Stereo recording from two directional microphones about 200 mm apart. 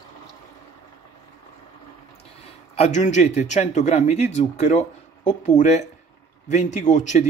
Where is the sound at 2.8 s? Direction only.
35° left (ahead or behind).